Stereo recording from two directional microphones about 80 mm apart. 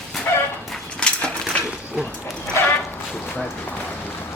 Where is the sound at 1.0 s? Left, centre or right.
Centre.